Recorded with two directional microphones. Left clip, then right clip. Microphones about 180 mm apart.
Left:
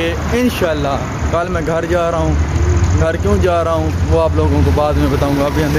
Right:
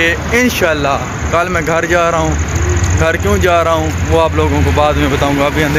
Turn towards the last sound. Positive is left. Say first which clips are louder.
# right 3 dB
turn(degrees=-5)  # may be behind; listen again after turning